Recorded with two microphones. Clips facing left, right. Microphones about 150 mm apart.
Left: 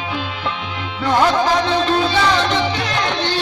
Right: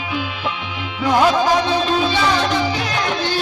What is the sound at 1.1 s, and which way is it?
Music, 10° right (ahead or behind).